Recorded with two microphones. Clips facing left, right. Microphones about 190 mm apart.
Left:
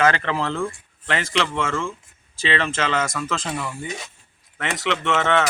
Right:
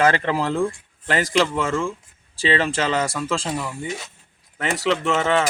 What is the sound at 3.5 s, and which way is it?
Speech, 5° right (ahead or behind).